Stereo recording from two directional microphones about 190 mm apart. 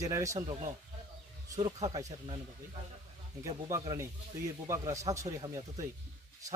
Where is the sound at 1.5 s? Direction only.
20° right (ahead or behind).